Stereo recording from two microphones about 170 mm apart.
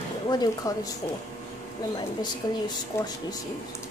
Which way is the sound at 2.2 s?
25° left (ahead or behind).